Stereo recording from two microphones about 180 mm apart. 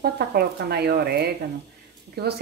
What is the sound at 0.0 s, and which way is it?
A woman's voice, 60° right (ahead or behind).